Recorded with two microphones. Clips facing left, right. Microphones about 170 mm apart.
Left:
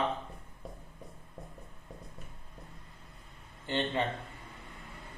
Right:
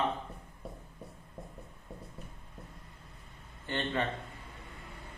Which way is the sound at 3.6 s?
20° left (ahead or behind).